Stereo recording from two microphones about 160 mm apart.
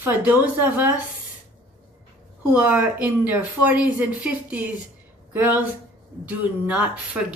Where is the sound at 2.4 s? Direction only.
10° right (ahead or behind).